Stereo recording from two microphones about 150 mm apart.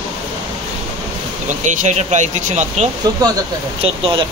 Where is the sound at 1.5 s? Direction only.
55° right (ahead or behind).